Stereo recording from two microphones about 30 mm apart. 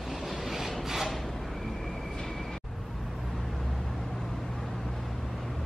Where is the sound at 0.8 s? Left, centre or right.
Centre.